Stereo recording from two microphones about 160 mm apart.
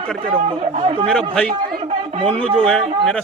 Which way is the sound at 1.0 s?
5° left (ahead or behind).